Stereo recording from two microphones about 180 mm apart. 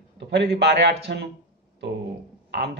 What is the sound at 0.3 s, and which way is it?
Speech, 70° right (ahead or behind).